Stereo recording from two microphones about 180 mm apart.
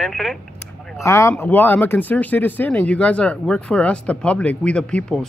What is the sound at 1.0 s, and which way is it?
Speech, 15° left (ahead or behind).